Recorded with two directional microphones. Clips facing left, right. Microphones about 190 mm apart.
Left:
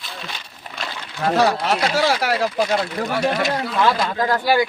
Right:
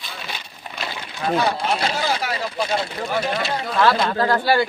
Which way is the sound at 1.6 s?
80° left.